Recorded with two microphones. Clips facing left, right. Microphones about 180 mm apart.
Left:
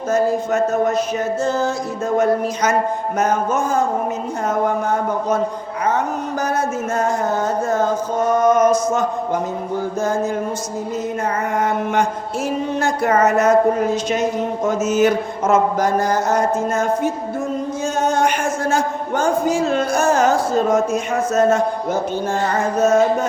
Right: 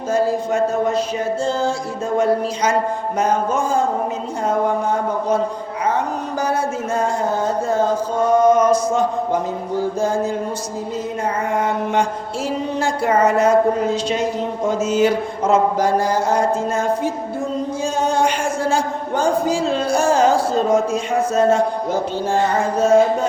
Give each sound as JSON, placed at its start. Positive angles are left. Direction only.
{"t": 0.5, "sound": "mantra", "side_deg": -30}
{"t": 1.5, "sound": "a woman's voice", "side_deg": -30}
{"t": 3.2, "sound": "mantra", "side_deg": -30}
{"t": 8.4, "sound": "mantra", "side_deg": -30}
{"t": 12.8, "sound": "a woman's voice", "side_deg": -30}